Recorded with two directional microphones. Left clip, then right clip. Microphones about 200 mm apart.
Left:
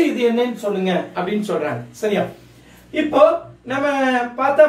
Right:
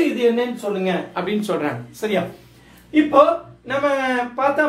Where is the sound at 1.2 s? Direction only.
25° right (ahead or behind).